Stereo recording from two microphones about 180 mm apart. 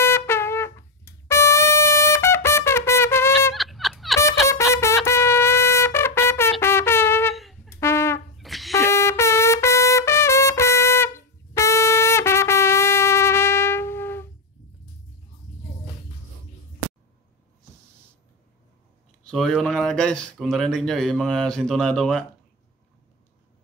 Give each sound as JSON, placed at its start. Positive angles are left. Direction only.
{"t": 0.0, "sound": "music", "side_deg": 15}
{"t": 3.5, "sound": "a sound", "side_deg": 0}
{"t": 4.2, "sound": "music", "side_deg": 15}
{"t": 5.0, "sound": "trumpet", "side_deg": 15}
{"t": 7.3, "sound": "brass instrument", "side_deg": 0}
{"t": 7.7, "sound": "trumpet", "side_deg": 15}
{"t": 8.4, "sound": "wind instrument", "side_deg": 0}
{"t": 8.7, "sound": "trumpet", "side_deg": 15}
{"t": 19.2, "sound": "speech", "side_deg": 5}